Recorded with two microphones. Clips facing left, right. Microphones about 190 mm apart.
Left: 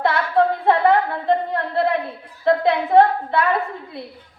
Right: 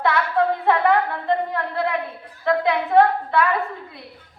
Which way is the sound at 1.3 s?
30° left (ahead or behind).